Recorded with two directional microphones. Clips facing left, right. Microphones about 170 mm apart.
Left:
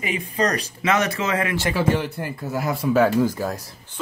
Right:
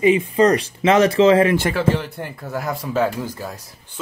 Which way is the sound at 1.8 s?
5° left (ahead or behind).